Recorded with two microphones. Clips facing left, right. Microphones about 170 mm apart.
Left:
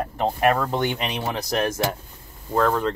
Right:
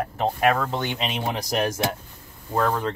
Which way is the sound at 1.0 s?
15° right (ahead or behind).